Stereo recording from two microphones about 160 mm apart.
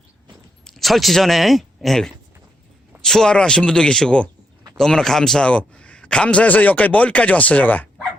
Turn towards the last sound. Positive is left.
turn(degrees=10)  # may be behind; listen again after turning